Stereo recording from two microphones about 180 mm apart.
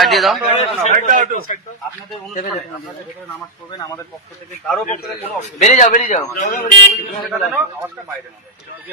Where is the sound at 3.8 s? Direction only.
20° left (ahead or behind).